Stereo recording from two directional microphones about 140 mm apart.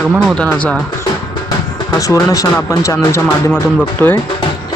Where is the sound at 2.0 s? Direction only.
25° left (ahead or behind).